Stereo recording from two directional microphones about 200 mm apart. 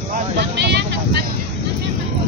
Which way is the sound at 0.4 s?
55° right (ahead or behind).